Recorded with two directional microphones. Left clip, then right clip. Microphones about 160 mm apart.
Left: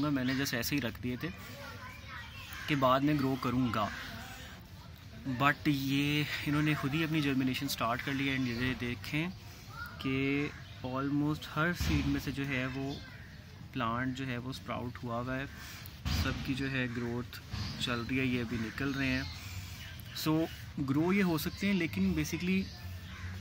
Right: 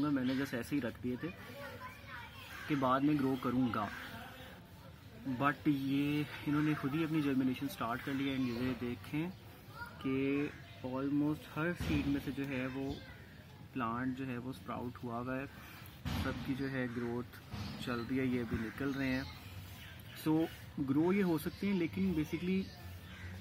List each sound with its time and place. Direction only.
0.0 s speech: 20° left (ahead or behind)
2.7 s speech: 15° left (ahead or behind)
5.4 s speech: 10° left (ahead or behind)
13.7 s speech: 15° left (ahead or behind)
20.3 s speech: 15° left (ahead or behind)